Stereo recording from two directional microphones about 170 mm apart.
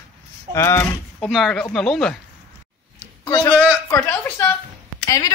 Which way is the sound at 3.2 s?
20° left (ahead or behind).